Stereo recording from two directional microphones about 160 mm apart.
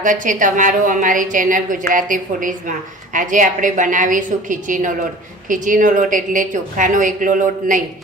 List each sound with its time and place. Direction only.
0.0 s a woman's voice: 55° right (ahead or behind)